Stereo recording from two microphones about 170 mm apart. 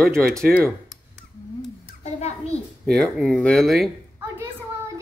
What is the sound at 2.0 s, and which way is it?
Speech, 40° left (ahead or behind).